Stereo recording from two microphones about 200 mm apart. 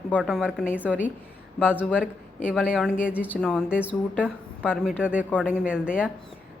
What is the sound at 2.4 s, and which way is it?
A woman's voice, 5° right (ahead or behind).